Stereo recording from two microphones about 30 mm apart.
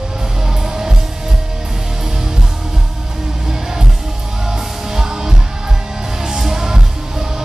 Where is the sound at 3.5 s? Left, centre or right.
Centre.